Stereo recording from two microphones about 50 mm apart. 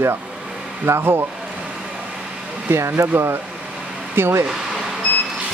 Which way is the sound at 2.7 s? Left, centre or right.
Right.